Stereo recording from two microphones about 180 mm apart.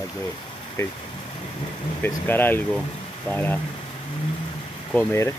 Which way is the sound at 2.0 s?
10° left (ahead or behind).